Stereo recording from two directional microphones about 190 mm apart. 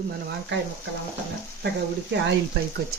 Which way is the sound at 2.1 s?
65° right (ahead or behind).